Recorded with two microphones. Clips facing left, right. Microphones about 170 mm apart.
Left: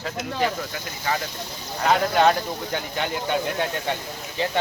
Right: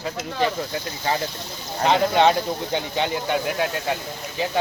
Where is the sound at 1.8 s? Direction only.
20° right (ahead or behind).